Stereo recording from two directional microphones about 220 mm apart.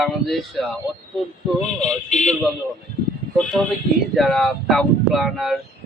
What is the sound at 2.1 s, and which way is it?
Speech, 30° left (ahead or behind).